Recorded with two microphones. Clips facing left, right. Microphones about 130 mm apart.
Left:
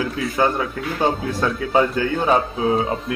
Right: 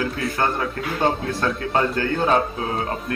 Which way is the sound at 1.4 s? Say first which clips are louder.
Left 4 dB; 10° left (ahead or behind).